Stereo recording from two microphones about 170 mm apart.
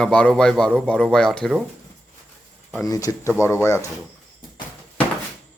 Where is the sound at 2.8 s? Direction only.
20° left (ahead or behind).